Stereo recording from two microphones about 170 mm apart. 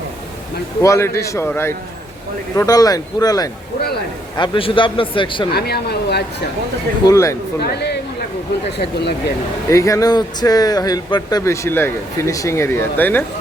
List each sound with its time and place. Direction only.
0.8 s a man's voice: 15° left (ahead or behind)
5.5 s speech: 70° left (ahead or behind)
7.1 s speech: 20° left (ahead or behind)
7.6 s speech: 75° left (ahead or behind)
9.6 s speech: 20° left (ahead or behind)